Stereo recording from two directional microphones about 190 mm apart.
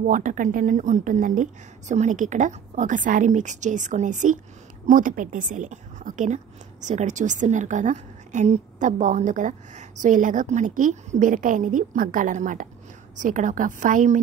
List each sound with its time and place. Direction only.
0.0 s a woman's voice: 45° right (ahead or behind)